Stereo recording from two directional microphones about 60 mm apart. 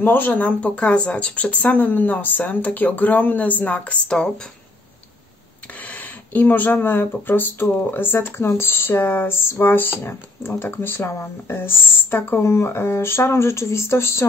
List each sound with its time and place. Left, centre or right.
0.0 s speech: left
0.6 s speech: left
5.8 s speech: left